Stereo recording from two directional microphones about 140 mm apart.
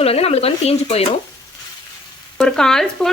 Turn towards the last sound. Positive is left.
turn(degrees=5)  # may be behind; listen again after turning